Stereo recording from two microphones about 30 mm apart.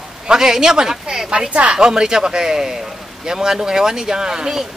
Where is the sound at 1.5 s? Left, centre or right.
Right.